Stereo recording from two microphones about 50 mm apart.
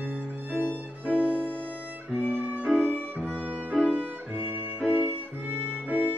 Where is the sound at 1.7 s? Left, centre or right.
Right.